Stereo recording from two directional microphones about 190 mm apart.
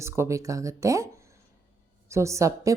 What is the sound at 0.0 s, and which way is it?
A woman's voice, 15° right (ahead or behind).